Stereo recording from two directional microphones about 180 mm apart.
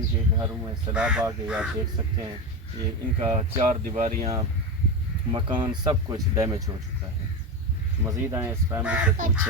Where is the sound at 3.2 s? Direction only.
40° right (ahead or behind).